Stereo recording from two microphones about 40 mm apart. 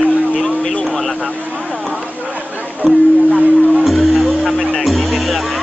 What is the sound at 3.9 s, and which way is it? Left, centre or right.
Music, centre.